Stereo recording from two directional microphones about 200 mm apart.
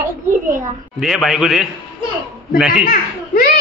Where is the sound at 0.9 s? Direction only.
Centre (ahead or behind).